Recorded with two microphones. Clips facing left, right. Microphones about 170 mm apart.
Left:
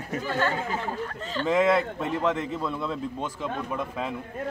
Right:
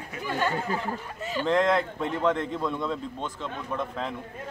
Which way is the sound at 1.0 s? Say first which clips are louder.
Even; 10° right (ahead or behind).